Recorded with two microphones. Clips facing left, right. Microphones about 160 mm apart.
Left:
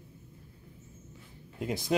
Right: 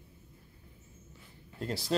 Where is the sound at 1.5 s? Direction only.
15° left (ahead or behind).